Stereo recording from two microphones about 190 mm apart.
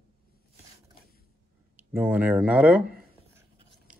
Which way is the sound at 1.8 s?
10° right (ahead or behind).